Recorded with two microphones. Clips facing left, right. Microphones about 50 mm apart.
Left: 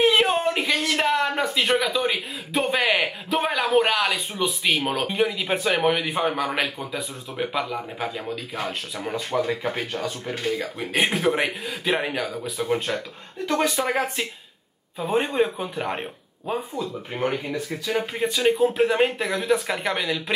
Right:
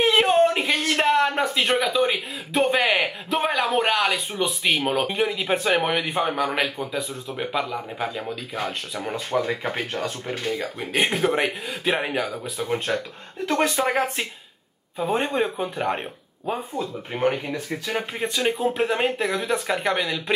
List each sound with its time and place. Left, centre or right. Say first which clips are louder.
0.0 s a sound: right 2 dB; centre
0.9 s speech: right 4 dB; centre
9.5 s speech: even; centre
10.0 s speech: even; centre
16.8 s speech: right 1 dB; right
17.1 s speech: right 3 dB; centre
17.9 s speech: left 2 dB; centre